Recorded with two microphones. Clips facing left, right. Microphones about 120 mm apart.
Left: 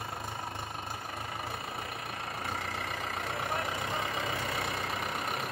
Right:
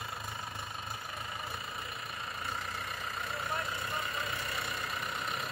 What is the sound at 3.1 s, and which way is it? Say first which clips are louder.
Vehicle: left 2 dB; 80° left.